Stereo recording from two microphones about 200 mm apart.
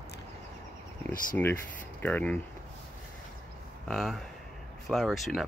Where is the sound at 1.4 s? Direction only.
10° left (ahead or behind).